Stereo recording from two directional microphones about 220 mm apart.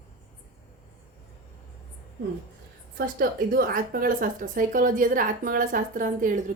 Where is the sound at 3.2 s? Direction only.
45° right (ahead or behind).